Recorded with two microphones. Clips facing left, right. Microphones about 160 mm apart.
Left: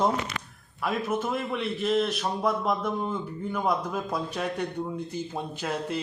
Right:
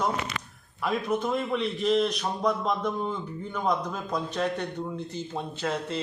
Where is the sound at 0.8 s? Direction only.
5° left (ahead or behind).